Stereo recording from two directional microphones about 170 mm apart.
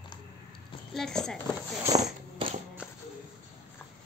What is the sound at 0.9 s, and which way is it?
Speech, 5° left (ahead or behind).